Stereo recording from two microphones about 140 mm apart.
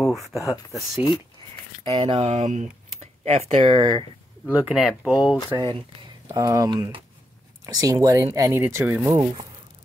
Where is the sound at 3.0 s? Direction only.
50° right (ahead or behind).